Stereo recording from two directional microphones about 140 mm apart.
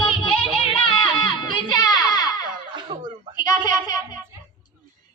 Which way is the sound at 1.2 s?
30° left (ahead or behind).